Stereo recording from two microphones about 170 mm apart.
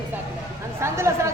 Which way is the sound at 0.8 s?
15° right (ahead or behind).